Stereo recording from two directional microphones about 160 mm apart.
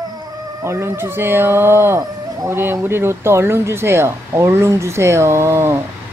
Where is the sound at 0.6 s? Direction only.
15° right (ahead or behind).